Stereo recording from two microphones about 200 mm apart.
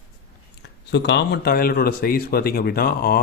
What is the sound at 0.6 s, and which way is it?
Speech, 60° left (ahead or behind).